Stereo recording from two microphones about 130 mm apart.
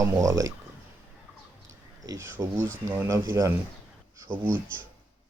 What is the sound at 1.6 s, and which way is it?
Speech, 25° right (ahead or behind).